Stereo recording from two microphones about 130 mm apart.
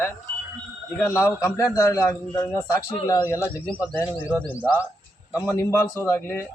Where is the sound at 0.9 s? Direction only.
20° left (ahead or behind).